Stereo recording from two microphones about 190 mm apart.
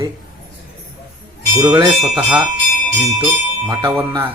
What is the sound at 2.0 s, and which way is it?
Speech, centre (ahead or behind).